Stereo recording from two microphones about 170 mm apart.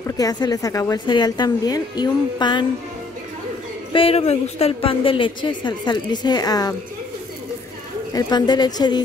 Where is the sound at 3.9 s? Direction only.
35° left (ahead or behind).